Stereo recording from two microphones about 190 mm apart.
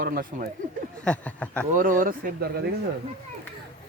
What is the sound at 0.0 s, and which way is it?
Speech, 50° right (ahead or behind).